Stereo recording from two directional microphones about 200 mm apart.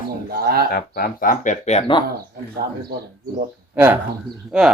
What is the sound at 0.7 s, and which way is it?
Speech, 50° left (ahead or behind).